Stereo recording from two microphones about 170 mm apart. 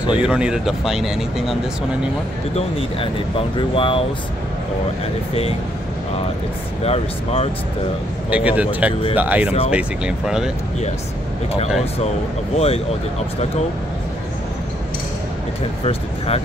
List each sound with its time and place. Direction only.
0.0 s speech: 5° right (ahead or behind)
2.5 s speech: 35° left (ahead or behind)
6.8 s speech: 40° left (ahead or behind)
8.3 s a man's voice: 10° right (ahead or behind)
12.5 s speech: 35° left (ahead or behind)
15.8 s a sound: 35° left (ahead or behind)